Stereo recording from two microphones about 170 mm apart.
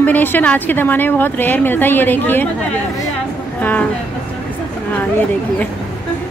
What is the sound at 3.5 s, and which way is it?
Speech, 10° left (ahead or behind).